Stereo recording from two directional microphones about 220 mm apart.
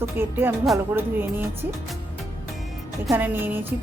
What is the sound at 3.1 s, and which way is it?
Speech, 10° right (ahead or behind).